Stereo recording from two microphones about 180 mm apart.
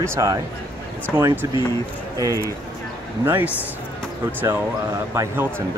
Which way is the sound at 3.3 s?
10° right (ahead or behind).